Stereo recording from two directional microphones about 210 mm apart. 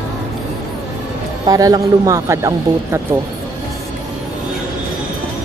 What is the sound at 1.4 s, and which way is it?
Speech, 20° right (ahead or behind).